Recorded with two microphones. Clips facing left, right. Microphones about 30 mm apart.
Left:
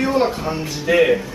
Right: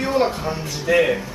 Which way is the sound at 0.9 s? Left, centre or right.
Left.